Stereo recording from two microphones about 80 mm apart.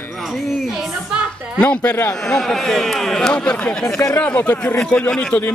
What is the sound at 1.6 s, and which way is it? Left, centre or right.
Speech, centre.